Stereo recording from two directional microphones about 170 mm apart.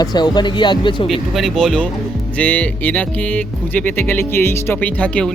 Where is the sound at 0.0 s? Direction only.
25° left (ahead or behind).